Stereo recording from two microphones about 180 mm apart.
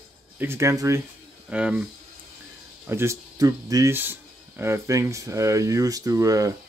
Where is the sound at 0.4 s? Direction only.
15° right (ahead or behind).